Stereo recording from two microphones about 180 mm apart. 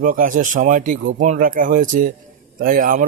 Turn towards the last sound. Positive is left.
turn(degrees=-50)  # may be behind; listen again after turning